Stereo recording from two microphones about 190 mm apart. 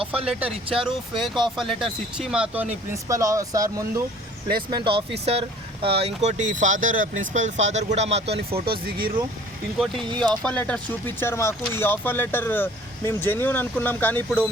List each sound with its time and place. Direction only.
0.0 s speech: 30° right (ahead or behind)
0.3 s speech: 5° right (ahead or behind); by 8.6 s 30° right (ahead or behind)
8.6 s speech: 50° right (ahead or behind)
9.7 s speech: centre (ahead or behind)